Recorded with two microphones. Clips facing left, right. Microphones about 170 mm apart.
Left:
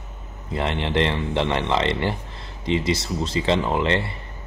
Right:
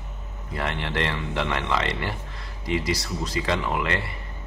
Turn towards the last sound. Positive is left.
turn(degrees=25)  # may be behind; listen again after turning